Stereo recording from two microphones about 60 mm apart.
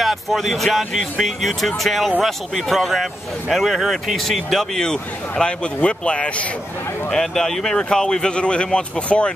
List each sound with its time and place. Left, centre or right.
0.0 s speech: centre
7.1 s speech: centre